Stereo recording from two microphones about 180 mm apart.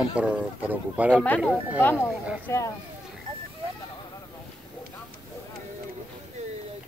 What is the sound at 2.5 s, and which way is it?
Speech, 15° left (ahead or behind).